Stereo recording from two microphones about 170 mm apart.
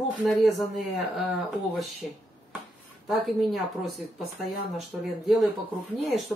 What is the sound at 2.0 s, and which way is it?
Speech, centre (ahead or behind).